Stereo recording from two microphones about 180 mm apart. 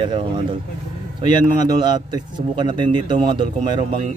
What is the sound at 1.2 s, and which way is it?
Speech, 25° right (ahead or behind).